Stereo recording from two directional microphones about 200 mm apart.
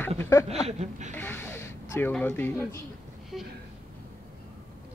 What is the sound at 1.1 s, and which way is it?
Speech, 10° left (ahead or behind).